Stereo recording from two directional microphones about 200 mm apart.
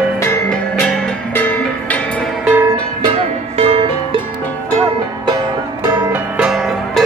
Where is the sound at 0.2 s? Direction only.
15° left (ahead or behind).